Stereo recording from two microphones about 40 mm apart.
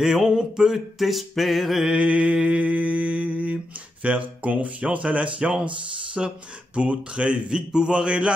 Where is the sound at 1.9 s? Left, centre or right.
Right.